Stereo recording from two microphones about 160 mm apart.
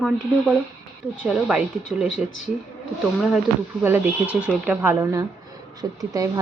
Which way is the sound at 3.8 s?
10° right (ahead or behind).